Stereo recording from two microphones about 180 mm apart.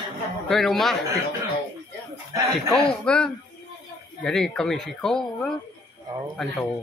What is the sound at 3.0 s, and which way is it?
Speech, 5° left (ahead or behind).